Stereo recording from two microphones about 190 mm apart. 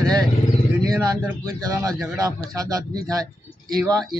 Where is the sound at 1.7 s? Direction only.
20° right (ahead or behind).